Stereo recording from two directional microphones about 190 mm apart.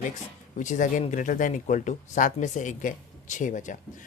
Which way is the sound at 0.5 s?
40° left (ahead or behind).